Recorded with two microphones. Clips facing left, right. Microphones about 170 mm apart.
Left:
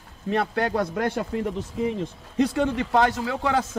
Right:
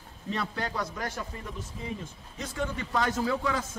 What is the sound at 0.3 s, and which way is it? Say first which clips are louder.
Speech: left 9 dB; 60° left (ahead or behind).